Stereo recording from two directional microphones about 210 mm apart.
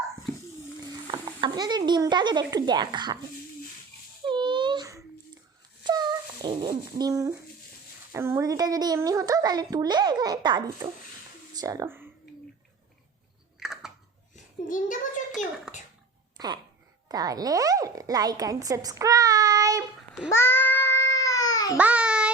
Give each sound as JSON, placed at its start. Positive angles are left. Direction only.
{"t": 0.9, "sound": "stir", "side_deg": -25}
{"t": 4.3, "sound": "a sound", "side_deg": -20}
{"t": 6.5, "sound": "a child's voice", "side_deg": -25}
{"t": 13.6, "sound": "chewing", "side_deg": 0}
{"t": 14.7, "sound": "a child's voice", "side_deg": 40}
{"t": 15.7, "sound": "a sound", "side_deg": 0}
{"t": 16.4, "sound": "speech", "side_deg": -20}
{"t": 20.3, "sound": "babbling", "side_deg": 10}
{"t": 21.8, "sound": "child singing", "side_deg": -5}